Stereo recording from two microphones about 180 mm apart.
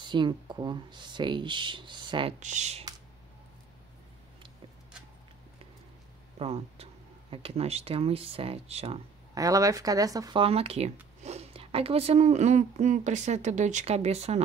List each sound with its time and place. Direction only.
0.0 s speech: 25° right (ahead or behind)
2.4 s speech: 40° right (ahead or behind)
6.3 s speech: 35° right (ahead or behind)
9.3 s speech: 20° right (ahead or behind)
10.4 s speech: 35° right (ahead or behind)